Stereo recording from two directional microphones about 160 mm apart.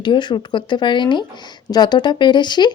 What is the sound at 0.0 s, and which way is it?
Speech, 30° left (ahead or behind).